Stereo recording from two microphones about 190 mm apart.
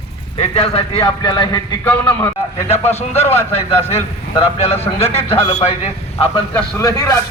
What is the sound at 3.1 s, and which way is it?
Speech, 35° left (ahead or behind).